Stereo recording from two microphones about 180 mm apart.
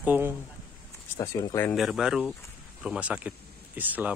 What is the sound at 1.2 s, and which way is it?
Speech, 20° left (ahead or behind).